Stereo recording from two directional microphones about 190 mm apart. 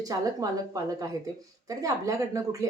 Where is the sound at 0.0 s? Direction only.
20° right (ahead or behind).